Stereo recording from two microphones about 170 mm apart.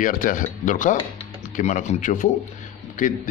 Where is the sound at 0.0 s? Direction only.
50° left (ahead or behind).